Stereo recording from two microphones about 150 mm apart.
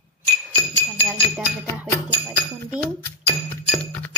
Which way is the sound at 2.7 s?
15° left (ahead or behind).